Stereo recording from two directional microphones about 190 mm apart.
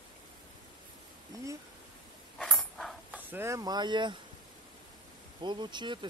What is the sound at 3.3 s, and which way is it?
Speech, 15° right (ahead or behind).